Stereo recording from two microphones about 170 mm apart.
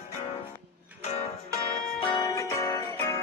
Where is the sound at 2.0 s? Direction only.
25° left (ahead or behind).